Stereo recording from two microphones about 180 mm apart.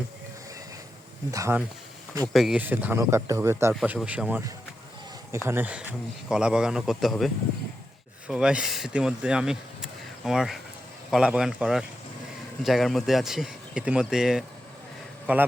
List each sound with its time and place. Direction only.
1.3 s speech: 15° right (ahead or behind)
2.2 s speech: centre (ahead or behind)
5.5 s a man's voice: 10° right (ahead or behind)
8.3 s a man's voice: 5° right (ahead or behind)